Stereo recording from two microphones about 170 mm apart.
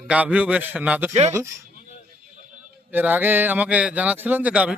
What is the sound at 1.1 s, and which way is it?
Speech, 40° right (ahead or behind).